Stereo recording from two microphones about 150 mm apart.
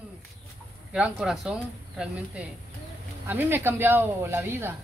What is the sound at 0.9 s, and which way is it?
Speech, 5° right (ahead or behind).